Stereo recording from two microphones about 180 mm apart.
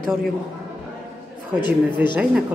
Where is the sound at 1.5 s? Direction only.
5° right (ahead or behind).